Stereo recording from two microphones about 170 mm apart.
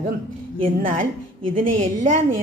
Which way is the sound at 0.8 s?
55° right (ahead or behind).